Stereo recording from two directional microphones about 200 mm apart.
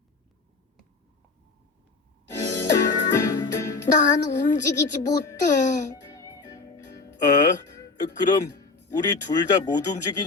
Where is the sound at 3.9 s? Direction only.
25° left (ahead or behind).